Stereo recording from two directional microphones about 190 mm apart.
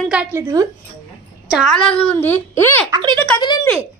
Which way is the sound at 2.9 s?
25° right (ahead or behind).